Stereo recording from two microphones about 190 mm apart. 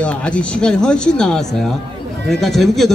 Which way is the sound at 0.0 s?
5° left (ahead or behind).